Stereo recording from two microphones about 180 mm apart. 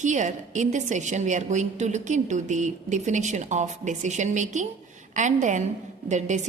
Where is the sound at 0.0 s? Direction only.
40° right (ahead or behind).